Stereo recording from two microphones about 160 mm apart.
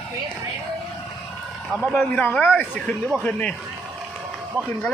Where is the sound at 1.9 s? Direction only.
10° left (ahead or behind).